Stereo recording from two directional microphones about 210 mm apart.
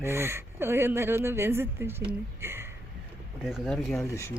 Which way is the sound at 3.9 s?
15° left (ahead or behind).